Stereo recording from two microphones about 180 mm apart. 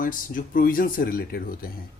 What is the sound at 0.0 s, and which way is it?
Speech, 50° left (ahead or behind).